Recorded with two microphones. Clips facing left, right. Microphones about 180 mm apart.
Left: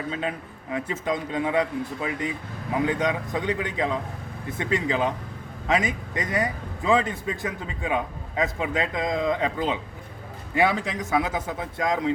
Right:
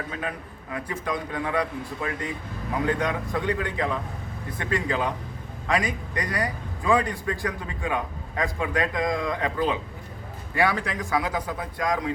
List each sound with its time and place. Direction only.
0.1 s a man's voice: 20° left (ahead or behind)